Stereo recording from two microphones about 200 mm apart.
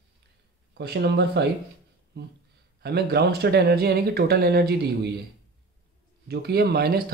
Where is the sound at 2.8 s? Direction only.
55° right (ahead or behind).